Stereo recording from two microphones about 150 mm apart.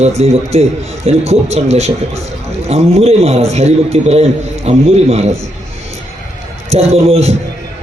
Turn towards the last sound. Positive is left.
turn(degrees=-45)  # may be behind; listen again after turning